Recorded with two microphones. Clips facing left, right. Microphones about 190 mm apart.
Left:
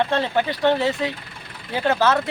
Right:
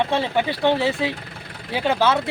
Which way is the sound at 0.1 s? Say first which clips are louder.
Even; 10° right (ahead or behind).